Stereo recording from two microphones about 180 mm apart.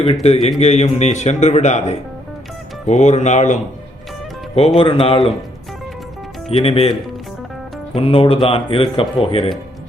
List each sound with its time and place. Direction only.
0.0 s speech: 35° left (ahead or behind)
4.8 s speech: 30° left (ahead or behind)
6.5 s speech: 30° left (ahead or behind)
7.9 s speech: 30° left (ahead or behind)